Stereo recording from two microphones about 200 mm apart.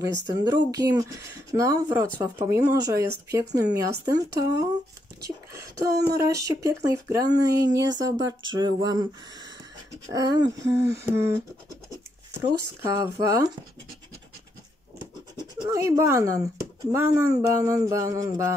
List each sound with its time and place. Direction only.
0.4 s speech: 20° right (ahead or behind)
7.9 s speech: 65° right (ahead or behind)
8.8 s speech: 20° right (ahead or behind)
12.4 s speech: 15° right (ahead or behind)
15.6 s speech: 15° right (ahead or behind)